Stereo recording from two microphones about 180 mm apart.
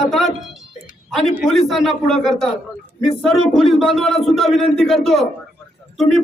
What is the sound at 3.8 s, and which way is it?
Speech, centre (ahead or behind).